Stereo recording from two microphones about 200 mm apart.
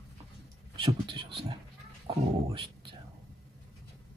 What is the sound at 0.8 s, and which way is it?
Speech, 25° right (ahead or behind).